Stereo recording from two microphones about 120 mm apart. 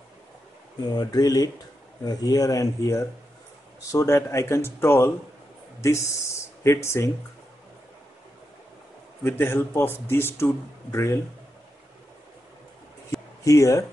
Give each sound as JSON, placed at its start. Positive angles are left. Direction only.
{"t": 0.9, "sound": "speech", "side_deg": 35}
{"t": 9.2, "sound": "speech", "side_deg": 20}
{"t": 13.4, "sound": "speech", "side_deg": 25}